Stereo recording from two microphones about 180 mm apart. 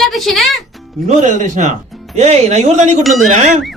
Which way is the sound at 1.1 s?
40° right (ahead or behind).